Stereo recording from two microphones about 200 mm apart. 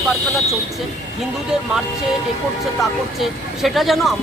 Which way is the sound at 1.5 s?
5° right (ahead or behind).